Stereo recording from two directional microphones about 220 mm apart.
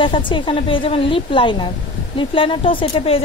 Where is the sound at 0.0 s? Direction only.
20° left (ahead or behind).